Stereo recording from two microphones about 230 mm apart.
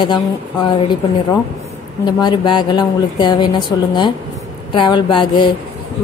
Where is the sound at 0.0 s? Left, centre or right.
Centre.